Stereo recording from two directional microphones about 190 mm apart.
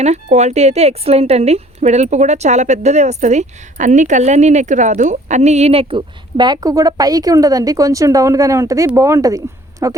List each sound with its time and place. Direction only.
0.0 s speech: 35° right (ahead or behind); by 10.0 s 15° right (ahead or behind)